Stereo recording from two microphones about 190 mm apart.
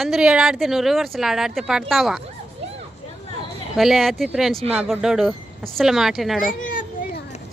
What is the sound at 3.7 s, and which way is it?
A woman's voice, centre (ahead or behind).